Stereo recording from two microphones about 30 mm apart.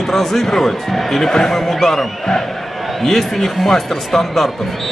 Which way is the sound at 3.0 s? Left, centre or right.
Centre.